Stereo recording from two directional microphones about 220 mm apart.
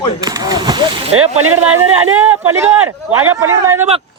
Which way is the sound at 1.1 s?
75° right (ahead or behind).